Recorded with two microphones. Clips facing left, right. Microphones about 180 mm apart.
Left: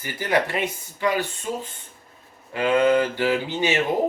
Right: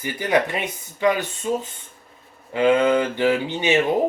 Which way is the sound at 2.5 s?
20° right (ahead or behind).